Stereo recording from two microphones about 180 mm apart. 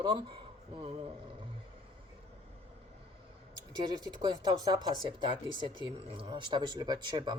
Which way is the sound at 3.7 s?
25° right (ahead or behind).